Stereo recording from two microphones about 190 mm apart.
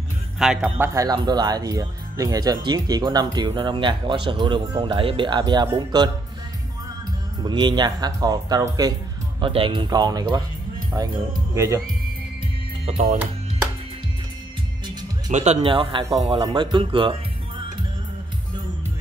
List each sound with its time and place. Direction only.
0.4 s speech: 5° right (ahead or behind); by 6.0 s 20° right (ahead or behind)
7.4 s speech: 25° right (ahead or behind)
12.8 s speech: 40° right (ahead or behind)
15.3 s speech: 35° right (ahead or behind)